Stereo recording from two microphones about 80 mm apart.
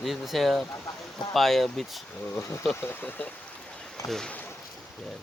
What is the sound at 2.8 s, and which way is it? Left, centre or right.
Speech, left.